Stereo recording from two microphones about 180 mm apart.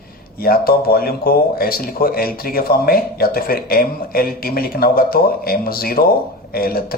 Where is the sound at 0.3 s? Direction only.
55° left (ahead or behind).